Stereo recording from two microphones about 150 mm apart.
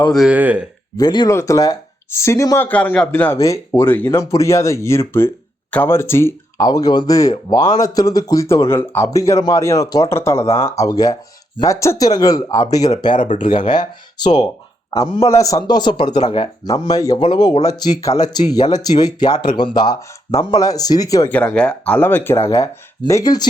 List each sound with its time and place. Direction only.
0.0 s speech: centre (ahead or behind)
0.3 s speech: 10° right (ahead or behind)
0.9 s speech: 25° left (ahead or behind)
13.1 s speech: 55° left (ahead or behind)
13.7 s speech: 30° left (ahead or behind)
21.2 s speech: 10° left (ahead or behind); by 23.5 s 25° left (ahead or behind)